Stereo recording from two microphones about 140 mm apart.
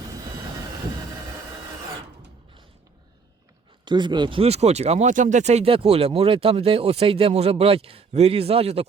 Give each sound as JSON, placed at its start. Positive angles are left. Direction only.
{"t": 3.8, "sound": "speech", "side_deg": -30}